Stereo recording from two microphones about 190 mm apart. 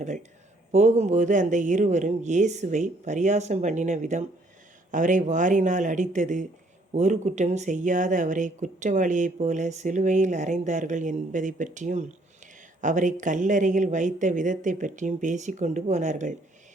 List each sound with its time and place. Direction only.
0.0 s speech: 40° right (ahead or behind)